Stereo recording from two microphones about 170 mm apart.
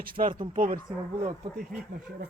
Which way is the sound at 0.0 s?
55° right (ahead or behind).